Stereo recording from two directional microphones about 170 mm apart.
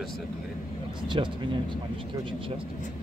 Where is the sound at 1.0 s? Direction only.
30° right (ahead or behind).